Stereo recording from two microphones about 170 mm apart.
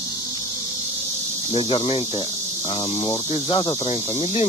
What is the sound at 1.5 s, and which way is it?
Speech, 30° left (ahead or behind).